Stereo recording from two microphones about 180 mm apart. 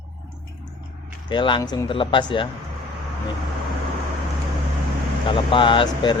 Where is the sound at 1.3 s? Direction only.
25° left (ahead or behind).